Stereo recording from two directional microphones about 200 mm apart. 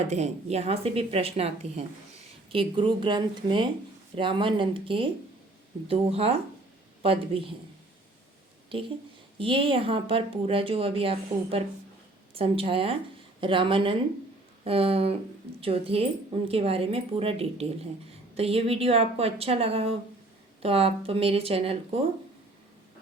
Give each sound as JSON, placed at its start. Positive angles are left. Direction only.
{"t": 0.1, "sound": "speech", "side_deg": -35}
{"t": 8.7, "sound": "speech", "side_deg": -25}